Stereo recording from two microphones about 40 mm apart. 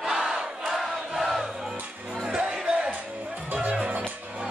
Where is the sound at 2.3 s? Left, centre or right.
Right.